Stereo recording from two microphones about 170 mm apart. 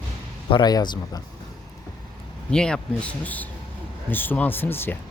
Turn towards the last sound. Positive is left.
turn(degrees=10)  # may be behind; listen again after turning